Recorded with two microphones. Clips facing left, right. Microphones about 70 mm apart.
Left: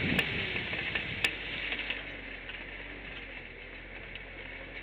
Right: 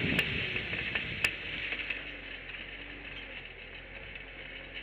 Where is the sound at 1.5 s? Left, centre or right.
Left.